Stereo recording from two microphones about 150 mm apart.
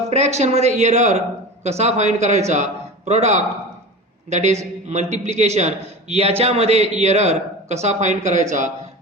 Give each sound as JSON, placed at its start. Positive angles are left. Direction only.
{"t": 0.1, "sound": "speech", "side_deg": -50}